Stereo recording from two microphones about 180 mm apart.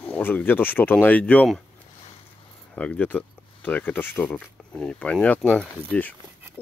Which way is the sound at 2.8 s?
10° left (ahead or behind).